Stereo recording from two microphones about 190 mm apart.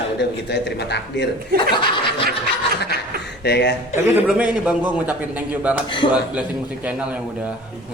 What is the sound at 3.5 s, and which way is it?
Speech, 60° left (ahead or behind).